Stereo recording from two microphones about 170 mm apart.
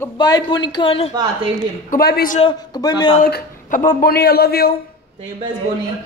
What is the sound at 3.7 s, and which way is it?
A man's voice, 55° left (ahead or behind).